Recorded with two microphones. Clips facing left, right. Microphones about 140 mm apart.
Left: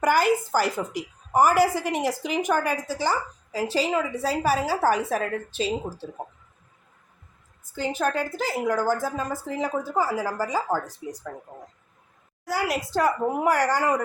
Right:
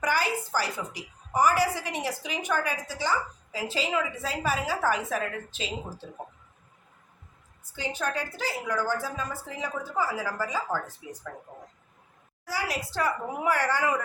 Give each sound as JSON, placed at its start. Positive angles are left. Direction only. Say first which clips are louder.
{"t": 0.0, "sound": "a woman's voice", "louder": "left 7 dB", "side_deg": 45}
{"t": 7.6, "sound": "a woman's voice", "louder": "left 6 dB", "side_deg": 45}
{"t": 12.5, "sound": "a woman's voice", "louder": "left 5 dB", "side_deg": 50}